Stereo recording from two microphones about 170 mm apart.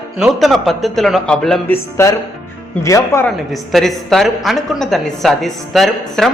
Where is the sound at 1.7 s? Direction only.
15° left (ahead or behind).